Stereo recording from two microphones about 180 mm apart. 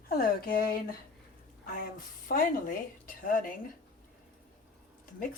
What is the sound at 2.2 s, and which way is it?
A woman's voice, 50° left (ahead or behind).